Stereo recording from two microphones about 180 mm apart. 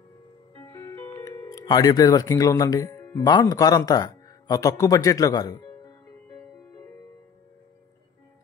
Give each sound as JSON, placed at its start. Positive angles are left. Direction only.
{"t": 0.6, "sound": "music", "side_deg": 15}
{"t": 3.3, "sound": "a man's voice", "side_deg": 20}